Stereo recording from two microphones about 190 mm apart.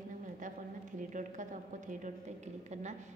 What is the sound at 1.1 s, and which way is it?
A woman's voice, 40° right (ahead or behind).